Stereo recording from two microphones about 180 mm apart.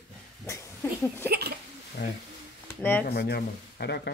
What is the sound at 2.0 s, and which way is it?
Speech, 70° left (ahead or behind).